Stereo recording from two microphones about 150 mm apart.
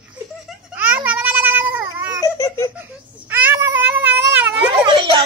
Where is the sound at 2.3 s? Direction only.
20° left (ahead or behind).